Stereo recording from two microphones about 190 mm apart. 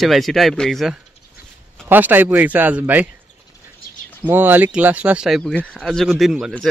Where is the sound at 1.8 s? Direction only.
10° right (ahead or behind).